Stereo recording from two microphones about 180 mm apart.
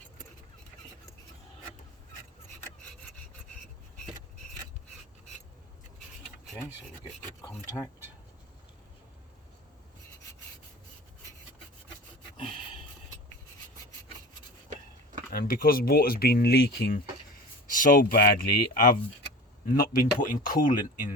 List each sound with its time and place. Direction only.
7.4 s speech: 20° left (ahead or behind)
15.3 s speech: 55° left (ahead or behind)
17.7 s a man's voice: 50° left (ahead or behind)